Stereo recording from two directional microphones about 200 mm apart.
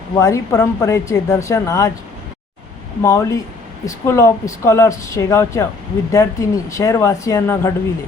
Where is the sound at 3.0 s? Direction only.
15° left (ahead or behind).